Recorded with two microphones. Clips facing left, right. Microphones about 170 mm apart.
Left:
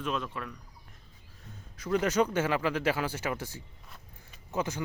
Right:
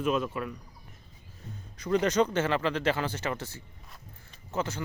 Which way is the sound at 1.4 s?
Centre (ahead or behind).